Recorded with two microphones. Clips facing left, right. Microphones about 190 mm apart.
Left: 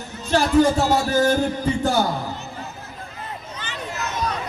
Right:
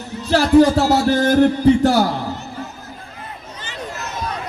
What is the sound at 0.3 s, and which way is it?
A man's voice, 75° right (ahead or behind).